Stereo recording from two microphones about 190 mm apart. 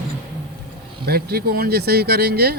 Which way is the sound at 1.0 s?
55° right (ahead or behind).